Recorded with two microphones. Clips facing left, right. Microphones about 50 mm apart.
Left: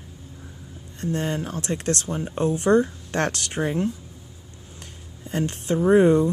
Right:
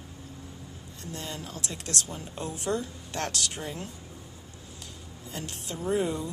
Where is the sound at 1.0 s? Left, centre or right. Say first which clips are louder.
Left 12 dB; left.